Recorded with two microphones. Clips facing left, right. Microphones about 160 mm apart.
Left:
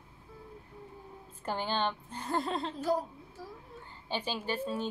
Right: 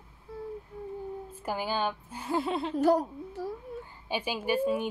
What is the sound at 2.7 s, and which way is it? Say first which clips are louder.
Speech: right 10 dB; 70° right (ahead or behind).